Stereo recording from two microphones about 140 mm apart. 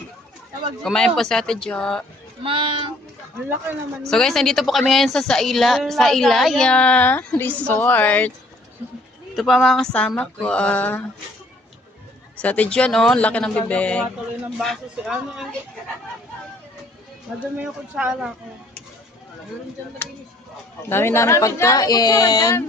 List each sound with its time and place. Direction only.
0.9 s a woman's voice: 5° left (ahead or behind)
2.4 s speech: 40° right (ahead or behind)
4.1 s a woman's voice: 5° left (ahead or behind)
9.3 s a woman's voice: centre (ahead or behind)
12.4 s a woman's voice: 10° left (ahead or behind)
17.6 s speech: 10° right (ahead or behind)
20.9 s speech: 15° left (ahead or behind)